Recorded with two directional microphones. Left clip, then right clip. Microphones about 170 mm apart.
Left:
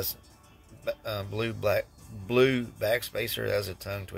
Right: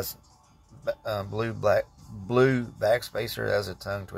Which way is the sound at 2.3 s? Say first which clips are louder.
Right 1 dB; 30° left (ahead or behind).